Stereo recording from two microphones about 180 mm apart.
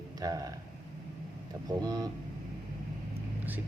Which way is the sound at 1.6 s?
20° right (ahead or behind).